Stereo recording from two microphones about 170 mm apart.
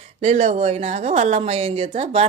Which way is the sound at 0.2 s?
40° right (ahead or behind).